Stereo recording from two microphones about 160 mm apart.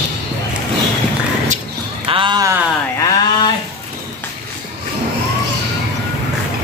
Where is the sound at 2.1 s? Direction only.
30° right (ahead or behind).